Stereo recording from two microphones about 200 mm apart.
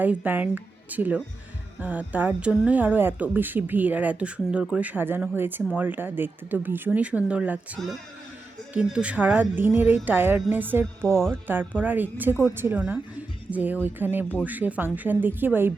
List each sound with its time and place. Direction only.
0.0 s a woman's voice: 5° right (ahead or behind)